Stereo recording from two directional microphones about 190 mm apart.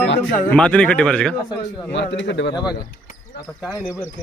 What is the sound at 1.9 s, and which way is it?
Speech, 70° left (ahead or behind).